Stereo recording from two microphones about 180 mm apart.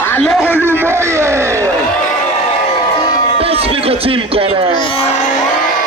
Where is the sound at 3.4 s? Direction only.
35° right (ahead or behind).